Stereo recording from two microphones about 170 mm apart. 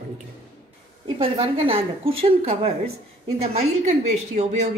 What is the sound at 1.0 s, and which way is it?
A woman's voice, 30° right (ahead or behind).